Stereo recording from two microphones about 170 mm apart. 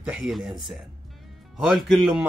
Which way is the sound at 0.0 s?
5° right (ahead or behind).